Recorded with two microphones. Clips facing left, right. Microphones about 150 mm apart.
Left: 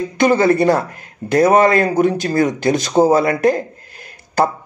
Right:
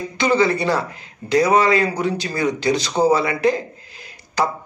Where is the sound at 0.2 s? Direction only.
50° left (ahead or behind).